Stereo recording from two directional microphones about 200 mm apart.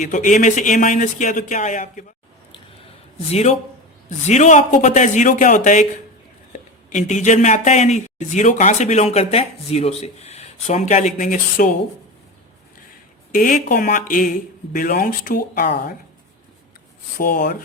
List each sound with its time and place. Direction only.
0.0 s speech: 40° left (ahead or behind)
3.2 s speech: 35° left (ahead or behind)
6.9 s speech: 35° left (ahead or behind)
13.3 s speech: 40° left (ahead or behind)
17.2 s speech: 45° left (ahead or behind)